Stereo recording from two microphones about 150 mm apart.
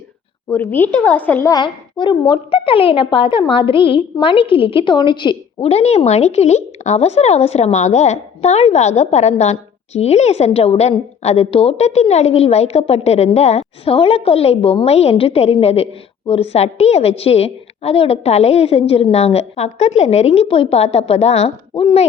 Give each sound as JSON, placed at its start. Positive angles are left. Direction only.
{"t": 0.5, "sound": "a woman's voice", "side_deg": 15}
{"t": 1.5, "sound": "a child's voice", "side_deg": 30}